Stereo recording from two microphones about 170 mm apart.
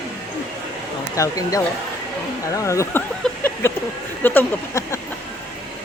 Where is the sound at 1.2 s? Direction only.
20° left (ahead or behind).